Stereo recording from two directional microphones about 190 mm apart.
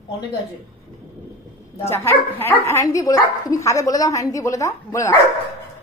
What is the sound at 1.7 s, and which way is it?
Speech, 15° left (ahead or behind).